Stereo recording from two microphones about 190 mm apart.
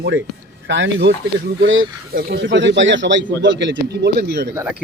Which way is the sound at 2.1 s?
50° right (ahead or behind).